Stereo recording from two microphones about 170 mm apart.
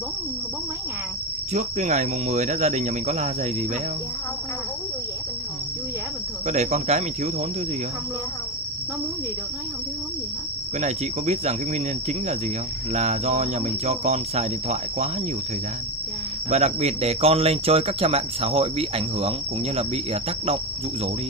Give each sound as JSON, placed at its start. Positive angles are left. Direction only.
{"t": 1.5, "sound": "speech", "side_deg": -40}
{"t": 6.4, "sound": "speech", "side_deg": -40}
{"t": 10.8, "sound": "speech", "side_deg": -40}
{"t": 16.4, "sound": "speech", "side_deg": -40}